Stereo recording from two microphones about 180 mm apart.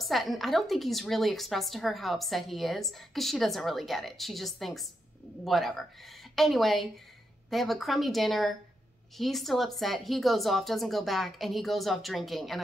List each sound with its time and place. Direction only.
0.0 s speech: centre (ahead or behind)